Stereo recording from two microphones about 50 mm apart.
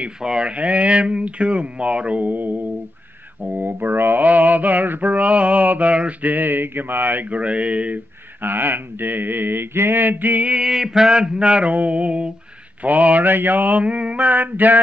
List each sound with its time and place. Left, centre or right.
0.2 s speech: centre; by 2.7 s right
3.4 s mantra: right
4.2 s mantra: right
7.3 s speech: right
8.4 s mantra: right
10.4 s speech: centre
12.8 s mantra: right
13.3 s mantra: right